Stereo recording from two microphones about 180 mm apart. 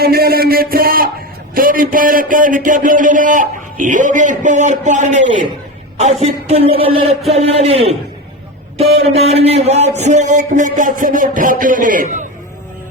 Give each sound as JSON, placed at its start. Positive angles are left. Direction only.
{"t": 0.0, "sound": "a sound", "side_deg": -60}
{"t": 1.5, "sound": "a man's voice", "side_deg": -50}
{"t": 9.0, "sound": "a man's voice", "side_deg": -35}